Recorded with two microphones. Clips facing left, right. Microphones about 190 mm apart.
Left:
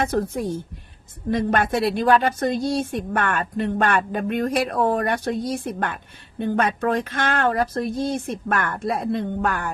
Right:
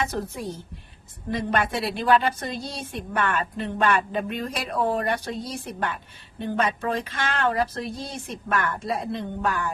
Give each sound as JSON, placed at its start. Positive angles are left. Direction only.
{"t": 0.0, "sound": "a woman's voice", "side_deg": 50}